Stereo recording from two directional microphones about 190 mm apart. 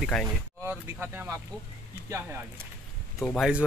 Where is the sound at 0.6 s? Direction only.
10° right (ahead or behind).